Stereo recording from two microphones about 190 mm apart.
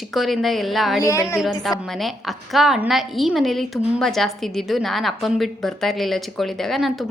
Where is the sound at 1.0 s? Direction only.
15° left (ahead or behind).